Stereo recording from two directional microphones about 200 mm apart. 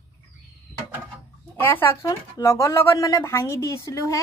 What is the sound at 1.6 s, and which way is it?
Speech, 10° left (ahead or behind).